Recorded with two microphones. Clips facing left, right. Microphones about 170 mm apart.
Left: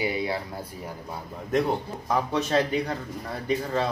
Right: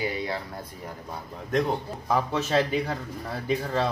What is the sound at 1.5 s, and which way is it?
A man's voice, 5° left (ahead or behind).